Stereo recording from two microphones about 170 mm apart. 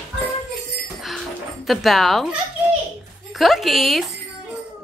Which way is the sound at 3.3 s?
Centre (ahead or behind).